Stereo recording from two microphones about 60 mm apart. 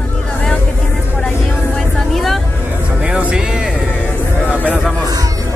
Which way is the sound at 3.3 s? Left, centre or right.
Centre.